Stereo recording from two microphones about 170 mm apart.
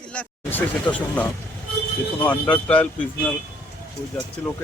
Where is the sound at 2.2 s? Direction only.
10° left (ahead or behind).